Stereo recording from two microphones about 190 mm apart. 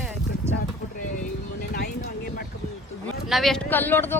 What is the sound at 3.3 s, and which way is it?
Speech, centre (ahead or behind).